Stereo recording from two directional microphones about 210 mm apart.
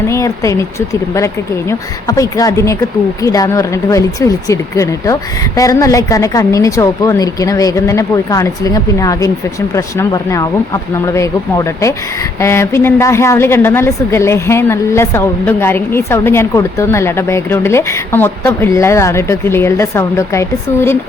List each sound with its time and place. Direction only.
0.1 s a woman's voice: 15° left (ahead or behind)